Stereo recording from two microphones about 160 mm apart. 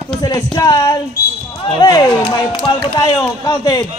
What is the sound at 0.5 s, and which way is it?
Speech, 25° left (ahead or behind).